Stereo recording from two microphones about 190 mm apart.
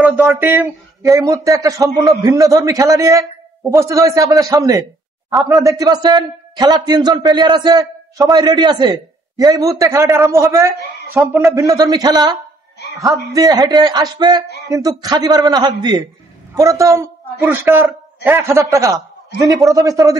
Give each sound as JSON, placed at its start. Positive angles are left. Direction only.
{"t": 0.0, "sound": "a man's voice", "side_deg": -5}
{"t": 5.3, "sound": "a man's voice", "side_deg": 0}
{"t": 5.7, "sound": "a man's voice", "side_deg": -20}